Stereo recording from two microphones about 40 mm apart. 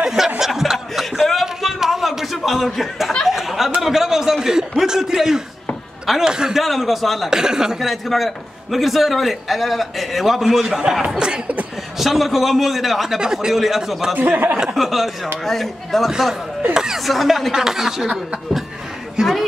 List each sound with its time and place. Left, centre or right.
0.0 s snicker: centre
1.1 s a sound: centre
6.2 s a man's voice: centre
6.6 s a man's voice: centre
7.2 s speech: centre
7.9 s a man's voice: centre
11.1 s a man's voice: right
12.0 s a man's voice: centre
13.2 s speech: centre
14.1 s speech: right
14.8 s a man's voice: centre
16.1 s speech: centre
16.7 s chuckle: centre
17.0 s speech: centre